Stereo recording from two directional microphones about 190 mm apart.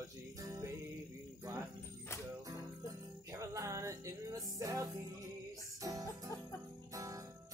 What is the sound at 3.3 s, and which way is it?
Music, 15° right (ahead or behind).